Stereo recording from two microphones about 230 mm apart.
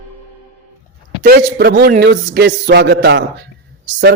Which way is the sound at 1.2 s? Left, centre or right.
Right.